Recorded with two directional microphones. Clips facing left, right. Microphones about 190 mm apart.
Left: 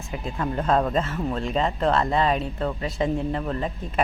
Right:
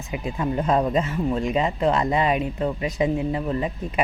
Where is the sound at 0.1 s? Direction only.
15° right (ahead or behind).